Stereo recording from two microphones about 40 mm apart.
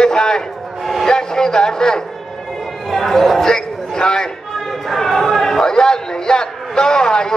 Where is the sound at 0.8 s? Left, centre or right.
Centre.